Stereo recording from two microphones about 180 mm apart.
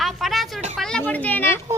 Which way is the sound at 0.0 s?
Centre (ahead or behind).